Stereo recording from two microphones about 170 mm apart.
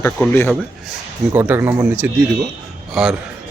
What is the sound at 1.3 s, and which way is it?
Speech, 10° right (ahead or behind).